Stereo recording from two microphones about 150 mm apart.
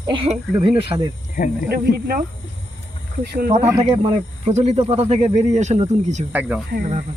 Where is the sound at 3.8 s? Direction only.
45° right (ahead or behind).